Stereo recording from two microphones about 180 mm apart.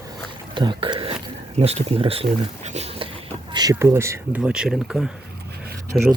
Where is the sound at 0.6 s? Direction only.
25° right (ahead or behind).